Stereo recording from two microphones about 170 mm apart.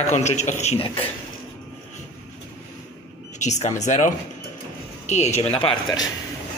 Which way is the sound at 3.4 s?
45° left (ahead or behind).